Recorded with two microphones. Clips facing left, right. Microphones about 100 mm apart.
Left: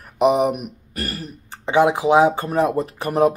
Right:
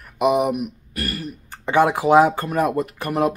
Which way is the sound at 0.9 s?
35° left (ahead or behind).